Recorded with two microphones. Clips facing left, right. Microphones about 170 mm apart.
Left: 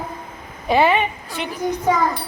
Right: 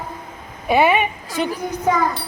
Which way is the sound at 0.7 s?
10° right (ahead or behind).